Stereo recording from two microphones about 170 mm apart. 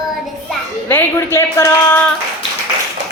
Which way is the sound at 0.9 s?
15° left (ahead or behind).